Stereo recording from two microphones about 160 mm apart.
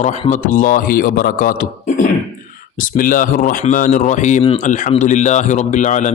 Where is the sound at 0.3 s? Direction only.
50° left (ahead or behind).